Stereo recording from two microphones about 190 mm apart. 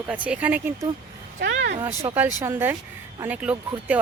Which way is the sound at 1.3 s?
70° right (ahead or behind).